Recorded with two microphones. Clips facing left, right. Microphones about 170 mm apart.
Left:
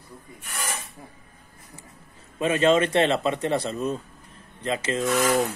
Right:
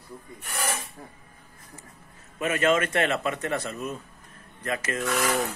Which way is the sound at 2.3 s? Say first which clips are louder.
Left 4 dB; 25° left (ahead or behind).